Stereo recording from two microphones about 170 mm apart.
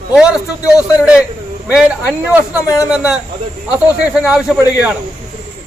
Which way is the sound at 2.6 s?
20° left (ahead or behind).